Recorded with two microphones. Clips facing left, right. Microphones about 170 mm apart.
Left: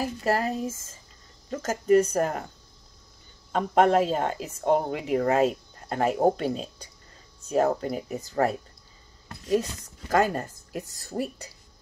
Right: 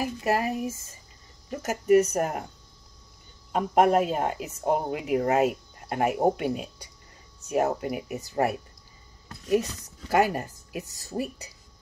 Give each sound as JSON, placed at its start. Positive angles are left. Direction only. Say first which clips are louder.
{"t": 0.0, "sound": "speech", "louder": "even", "side_deg": -15}
{"t": 3.5, "sound": "speech", "louder": "even", "side_deg": -10}
{"t": 10.1, "sound": "speech", "louder": "even", "side_deg": -15}